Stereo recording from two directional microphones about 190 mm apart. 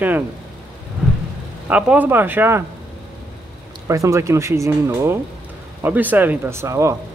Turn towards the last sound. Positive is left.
turn(degrees=-15)  # may be behind; listen again after turning